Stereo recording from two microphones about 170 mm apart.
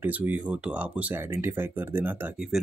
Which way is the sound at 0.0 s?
10° right (ahead or behind).